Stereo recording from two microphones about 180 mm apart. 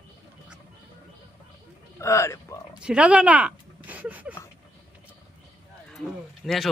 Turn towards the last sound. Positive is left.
turn(degrees=0)  # may be behind; listen again after turning